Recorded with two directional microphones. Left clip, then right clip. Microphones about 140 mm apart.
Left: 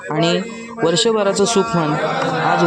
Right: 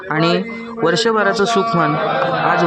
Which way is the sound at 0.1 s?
15° left (ahead or behind).